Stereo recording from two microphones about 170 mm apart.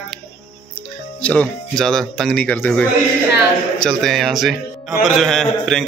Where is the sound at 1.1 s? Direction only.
5° left (ahead or behind).